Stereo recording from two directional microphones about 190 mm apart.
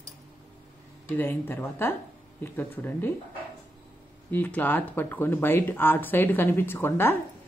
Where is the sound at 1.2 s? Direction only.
10° left (ahead or behind).